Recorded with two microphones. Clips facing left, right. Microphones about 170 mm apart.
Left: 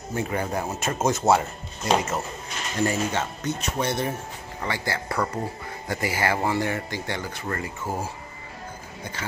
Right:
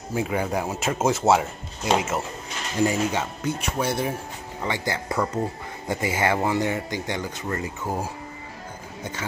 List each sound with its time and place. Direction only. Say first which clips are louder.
0.1 s speech: right 2 dB; 10° right (ahead or behind)
4.6 s speech: right 2 dB; 20° right (ahead or behind)